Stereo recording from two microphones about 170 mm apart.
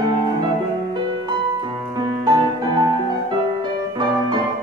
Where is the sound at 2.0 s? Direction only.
25° right (ahead or behind).